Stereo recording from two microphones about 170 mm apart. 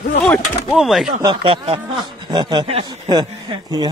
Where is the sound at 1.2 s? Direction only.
30° right (ahead or behind).